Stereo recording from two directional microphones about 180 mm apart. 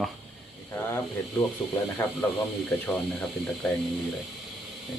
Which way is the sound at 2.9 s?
5° left (ahead or behind).